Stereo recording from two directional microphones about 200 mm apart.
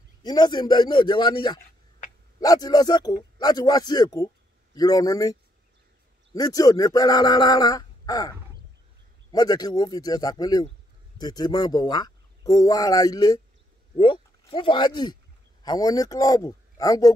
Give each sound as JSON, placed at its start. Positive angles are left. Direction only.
{"t": 0.2, "sound": "a man's voice", "side_deg": 20}